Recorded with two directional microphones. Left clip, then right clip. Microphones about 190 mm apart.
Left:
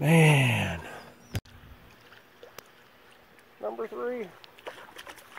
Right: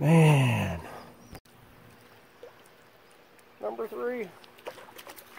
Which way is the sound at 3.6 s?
35° left (ahead or behind).